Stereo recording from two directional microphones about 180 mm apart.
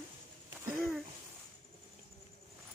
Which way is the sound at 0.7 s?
10° right (ahead or behind).